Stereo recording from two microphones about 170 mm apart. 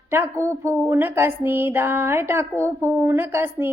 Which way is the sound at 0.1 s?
15° right (ahead or behind).